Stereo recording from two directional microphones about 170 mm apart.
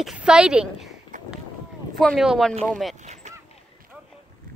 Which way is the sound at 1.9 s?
Centre (ahead or behind).